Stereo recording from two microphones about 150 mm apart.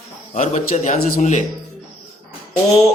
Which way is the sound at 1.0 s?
75° left (ahead or behind).